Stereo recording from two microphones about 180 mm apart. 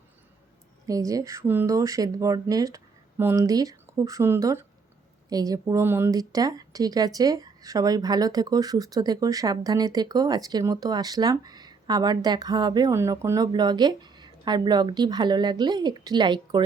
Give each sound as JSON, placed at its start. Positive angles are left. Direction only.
{"t": 0.9, "sound": "a woman's voice", "side_deg": -20}